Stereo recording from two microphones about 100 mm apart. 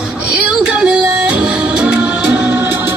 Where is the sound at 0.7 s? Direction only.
10° right (ahead or behind).